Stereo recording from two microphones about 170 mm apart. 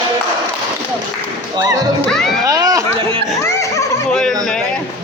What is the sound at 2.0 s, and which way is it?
Music, centre (ahead or behind).